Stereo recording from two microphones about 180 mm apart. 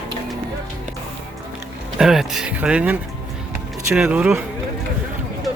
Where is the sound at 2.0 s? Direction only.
5° right (ahead or behind).